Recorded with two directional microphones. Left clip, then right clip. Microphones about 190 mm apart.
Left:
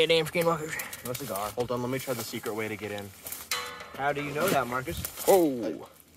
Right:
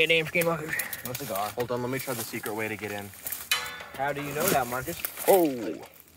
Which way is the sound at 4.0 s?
15° left (ahead or behind).